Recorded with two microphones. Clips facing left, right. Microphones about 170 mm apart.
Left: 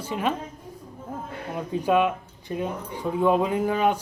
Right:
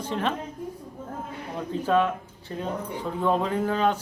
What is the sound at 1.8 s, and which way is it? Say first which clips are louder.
Speech: left 2 dB; 15° left (ahead or behind).